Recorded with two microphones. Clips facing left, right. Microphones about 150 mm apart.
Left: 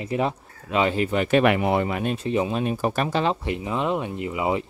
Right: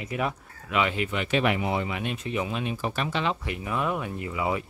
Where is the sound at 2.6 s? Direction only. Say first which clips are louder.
Left 6 dB; 45° left (ahead or behind); by 4.6 s 20° left (ahead or behind).